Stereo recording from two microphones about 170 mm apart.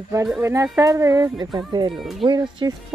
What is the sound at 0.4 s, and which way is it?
Speech, 15° right (ahead or behind).